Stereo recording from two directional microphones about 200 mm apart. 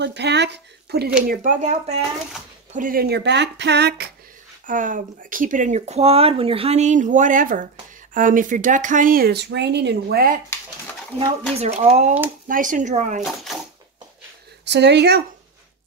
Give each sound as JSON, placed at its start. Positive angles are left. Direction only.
{"t": 0.0, "sound": "speech", "side_deg": -60}
{"t": 1.2, "sound": "speech", "side_deg": -40}
{"t": 4.6, "sound": "speech", "side_deg": -40}
{"t": 11.6, "sound": "speech", "side_deg": -35}
{"t": 13.2, "sound": "a sound", "side_deg": 0}
{"t": 14.6, "sound": "speech", "side_deg": -60}